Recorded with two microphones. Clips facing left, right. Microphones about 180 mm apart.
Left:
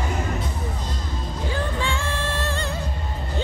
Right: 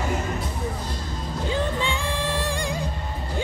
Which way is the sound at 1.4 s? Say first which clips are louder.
Right 1 dB; 20° right (ahead or behind).